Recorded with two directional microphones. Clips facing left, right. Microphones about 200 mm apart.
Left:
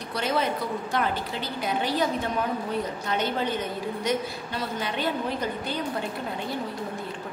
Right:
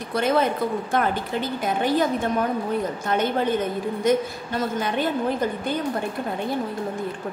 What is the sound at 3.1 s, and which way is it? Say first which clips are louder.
A woman's voice: right 6 dB; 50° right (ahead or behind).